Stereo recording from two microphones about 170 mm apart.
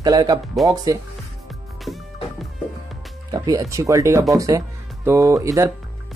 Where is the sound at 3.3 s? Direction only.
20° right (ahead or behind).